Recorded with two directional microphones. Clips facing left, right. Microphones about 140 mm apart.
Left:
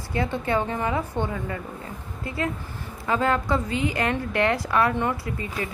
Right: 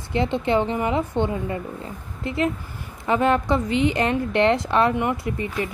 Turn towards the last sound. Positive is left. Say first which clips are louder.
# right 3 dB
turn(degrees=-20)  # may be behind; listen again after turning